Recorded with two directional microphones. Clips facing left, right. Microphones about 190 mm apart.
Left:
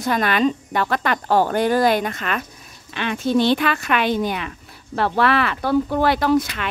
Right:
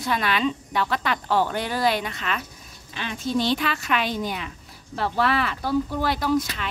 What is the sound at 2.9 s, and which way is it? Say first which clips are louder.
A woman's voice: left 6 dB; 65° left (ahead or behind).